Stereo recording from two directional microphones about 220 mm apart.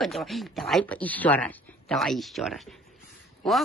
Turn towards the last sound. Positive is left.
turn(degrees=0)  # may be behind; listen again after turning